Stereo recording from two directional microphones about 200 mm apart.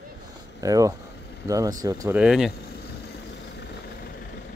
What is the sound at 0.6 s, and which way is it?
Speech, 15° right (ahead or behind).